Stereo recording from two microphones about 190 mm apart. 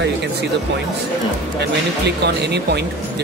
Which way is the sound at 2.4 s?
60° right (ahead or behind).